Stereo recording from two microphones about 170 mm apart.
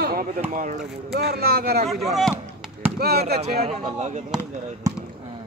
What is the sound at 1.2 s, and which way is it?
Speech, 65° right (ahead or behind).